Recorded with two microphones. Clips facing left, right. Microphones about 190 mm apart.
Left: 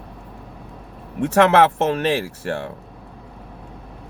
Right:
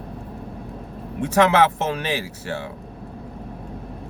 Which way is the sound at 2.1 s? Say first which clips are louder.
Left 4 dB; 50° left (ahead or behind).